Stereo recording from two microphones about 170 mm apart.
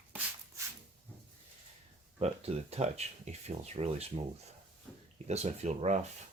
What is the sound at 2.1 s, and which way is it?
Speech, 35° right (ahead or behind).